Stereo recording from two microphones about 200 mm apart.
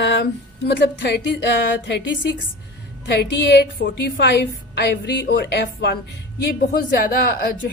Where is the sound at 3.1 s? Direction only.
55° left (ahead or behind).